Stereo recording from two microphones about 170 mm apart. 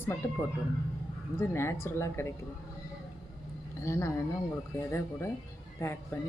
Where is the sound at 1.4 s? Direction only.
15° left (ahead or behind).